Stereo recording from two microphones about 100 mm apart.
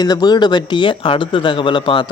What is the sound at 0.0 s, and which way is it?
Speech, 45° left (ahead or behind).